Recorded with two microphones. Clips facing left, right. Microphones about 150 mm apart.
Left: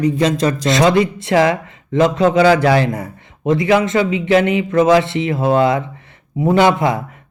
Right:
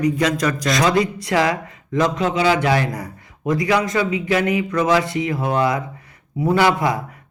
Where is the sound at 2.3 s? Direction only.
40° left (ahead or behind).